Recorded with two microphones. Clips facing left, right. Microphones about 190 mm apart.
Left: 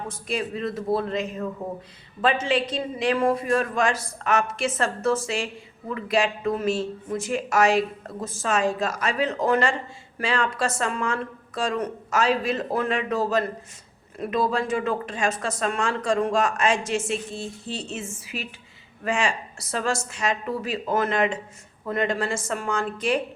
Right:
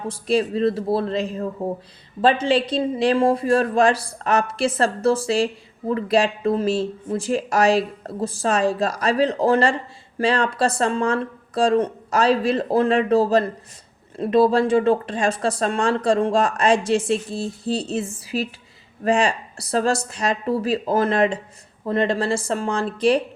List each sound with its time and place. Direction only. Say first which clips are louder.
0.1 s speech: right 10 dB; 35° right (ahead or behind)